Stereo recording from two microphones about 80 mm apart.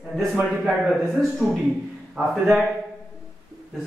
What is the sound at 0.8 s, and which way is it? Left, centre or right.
A man's voice, centre.